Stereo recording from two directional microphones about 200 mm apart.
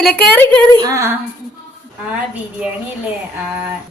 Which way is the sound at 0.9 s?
15° right (ahead or behind).